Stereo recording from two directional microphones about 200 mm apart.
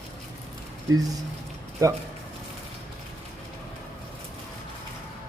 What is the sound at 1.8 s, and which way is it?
Speech, 15° right (ahead or behind).